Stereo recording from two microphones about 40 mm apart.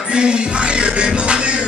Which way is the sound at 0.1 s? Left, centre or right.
Right.